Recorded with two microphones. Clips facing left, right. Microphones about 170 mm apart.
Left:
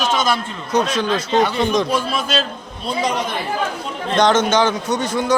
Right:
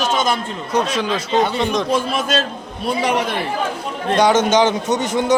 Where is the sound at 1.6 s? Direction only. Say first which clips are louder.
Left 2 dB; centre (ahead or behind).